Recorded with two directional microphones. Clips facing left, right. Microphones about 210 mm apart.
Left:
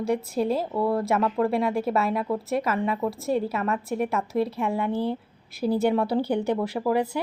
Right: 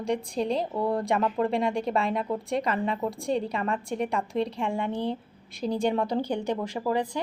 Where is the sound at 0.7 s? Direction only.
20° right (ahead or behind).